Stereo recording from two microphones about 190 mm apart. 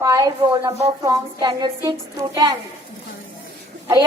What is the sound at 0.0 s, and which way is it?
A woman's voice, 20° right (ahead or behind).